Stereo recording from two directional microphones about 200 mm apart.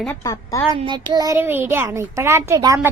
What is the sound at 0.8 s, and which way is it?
A woman's voice, 25° right (ahead or behind).